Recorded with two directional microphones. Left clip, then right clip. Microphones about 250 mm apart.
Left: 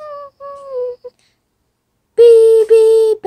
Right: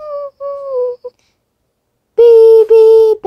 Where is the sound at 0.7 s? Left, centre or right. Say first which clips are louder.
Right 3 dB; centre.